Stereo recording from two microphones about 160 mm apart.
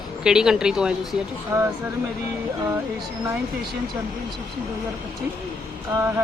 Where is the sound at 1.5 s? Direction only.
20° right (ahead or behind).